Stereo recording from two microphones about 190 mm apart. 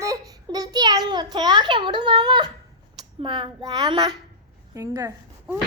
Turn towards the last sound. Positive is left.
turn(degrees=-15)  # may be behind; listen again after turning